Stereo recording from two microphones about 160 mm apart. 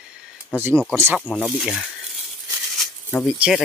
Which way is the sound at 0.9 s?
15° right (ahead or behind).